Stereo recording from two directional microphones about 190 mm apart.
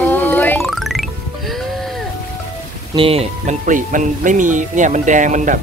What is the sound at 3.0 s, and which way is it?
Speech, 30° right (ahead or behind).